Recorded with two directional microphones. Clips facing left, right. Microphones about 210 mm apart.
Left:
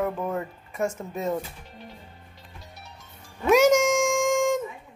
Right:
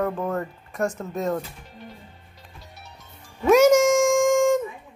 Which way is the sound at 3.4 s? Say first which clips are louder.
Right 3 dB; centre (ahead or behind).